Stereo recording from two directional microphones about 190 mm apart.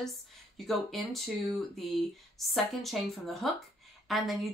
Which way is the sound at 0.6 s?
Centre (ahead or behind).